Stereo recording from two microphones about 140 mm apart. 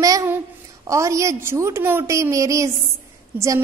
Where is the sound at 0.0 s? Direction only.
25° right (ahead or behind).